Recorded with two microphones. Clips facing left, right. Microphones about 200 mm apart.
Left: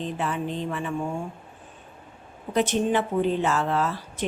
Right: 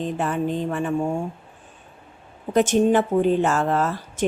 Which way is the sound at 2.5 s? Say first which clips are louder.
Right 5 dB; 45° right (ahead or behind).